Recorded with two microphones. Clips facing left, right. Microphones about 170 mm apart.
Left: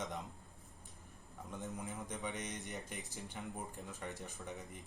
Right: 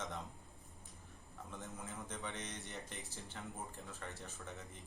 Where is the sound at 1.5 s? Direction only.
20° left (ahead or behind).